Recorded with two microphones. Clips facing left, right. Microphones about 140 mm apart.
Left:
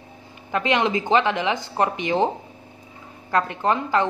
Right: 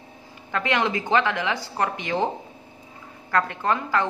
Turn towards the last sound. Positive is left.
turn(degrees=20)  # may be behind; listen again after turning